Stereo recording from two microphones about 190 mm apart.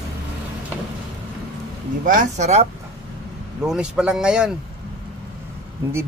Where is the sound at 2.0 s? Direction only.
45° right (ahead or behind).